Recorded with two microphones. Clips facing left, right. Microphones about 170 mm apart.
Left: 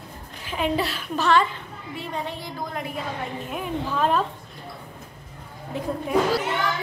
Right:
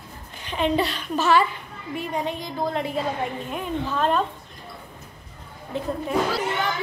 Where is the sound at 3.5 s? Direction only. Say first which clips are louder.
Right 1 dB; 5° left (ahead or behind).